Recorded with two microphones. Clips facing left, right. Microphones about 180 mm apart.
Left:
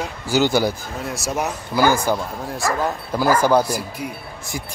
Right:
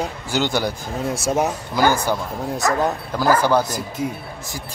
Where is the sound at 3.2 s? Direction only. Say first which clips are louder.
Left 1 dB; 10° left (ahead or behind).